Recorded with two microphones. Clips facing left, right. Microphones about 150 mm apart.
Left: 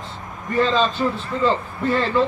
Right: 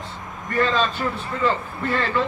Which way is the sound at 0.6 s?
20° left (ahead or behind).